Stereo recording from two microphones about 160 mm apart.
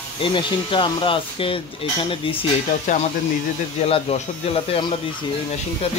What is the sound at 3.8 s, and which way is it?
Speech, 40° left (ahead or behind).